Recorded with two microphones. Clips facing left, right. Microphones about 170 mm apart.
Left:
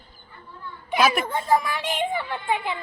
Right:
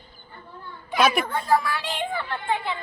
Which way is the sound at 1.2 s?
20° left (ahead or behind).